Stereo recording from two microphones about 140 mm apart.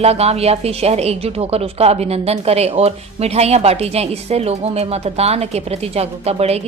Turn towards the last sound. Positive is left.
turn(degrees=-50)  # may be behind; listen again after turning